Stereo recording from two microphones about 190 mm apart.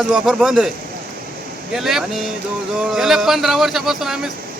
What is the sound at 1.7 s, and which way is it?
Speech, centre (ahead or behind).